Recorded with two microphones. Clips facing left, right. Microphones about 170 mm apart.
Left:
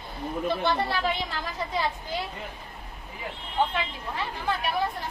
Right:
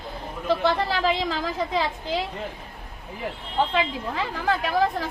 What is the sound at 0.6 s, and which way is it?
A woman's voice, 90° right.